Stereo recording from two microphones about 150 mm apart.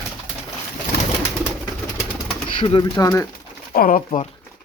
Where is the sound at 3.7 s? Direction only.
65° left (ahead or behind).